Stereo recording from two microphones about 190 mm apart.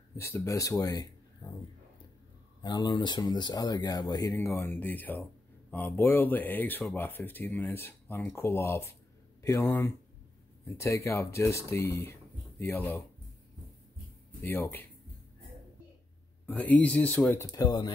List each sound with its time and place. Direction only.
0.2 s speech: 15° left (ahead or behind)
2.6 s speech: 25° left (ahead or behind)
14.4 s speech: 10° left (ahead or behind)
16.4 s speech: 10° left (ahead or behind)